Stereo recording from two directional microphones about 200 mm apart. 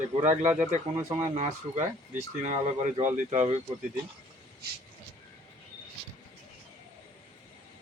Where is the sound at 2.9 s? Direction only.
40° right (ahead or behind).